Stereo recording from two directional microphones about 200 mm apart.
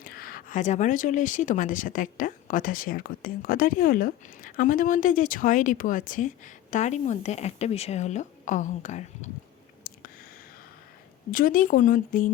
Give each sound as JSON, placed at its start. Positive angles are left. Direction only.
{"t": 0.0, "sound": "speech", "side_deg": 45}
{"t": 9.9, "sound": "a sound", "side_deg": 45}
{"t": 11.3, "sound": "speech", "side_deg": 45}